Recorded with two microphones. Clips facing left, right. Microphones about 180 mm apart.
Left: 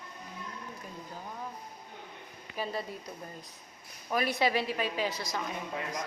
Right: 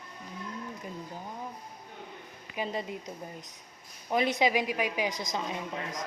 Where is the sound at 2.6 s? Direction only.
20° right (ahead or behind).